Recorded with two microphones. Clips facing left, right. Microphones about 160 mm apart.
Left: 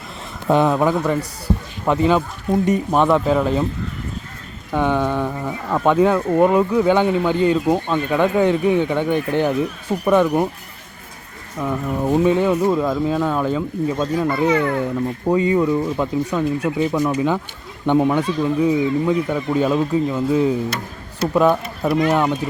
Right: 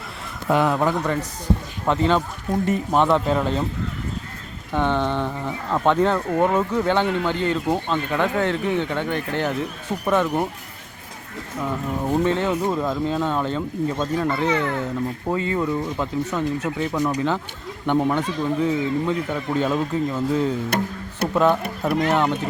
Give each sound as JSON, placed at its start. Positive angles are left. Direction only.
{"t": 0.4, "sound": "a man's voice", "side_deg": 25}
{"t": 0.8, "sound": "speech", "side_deg": 10}
{"t": 4.7, "sound": "speech", "side_deg": 10}
{"t": 12.0, "sound": "speech", "side_deg": 10}
{"t": 20.7, "sound": "speech", "side_deg": -60}
{"t": 21.3, "sound": "speech", "side_deg": 10}